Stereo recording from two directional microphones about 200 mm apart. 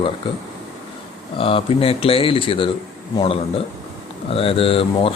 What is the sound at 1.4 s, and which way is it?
Speech, 25° left (ahead or behind).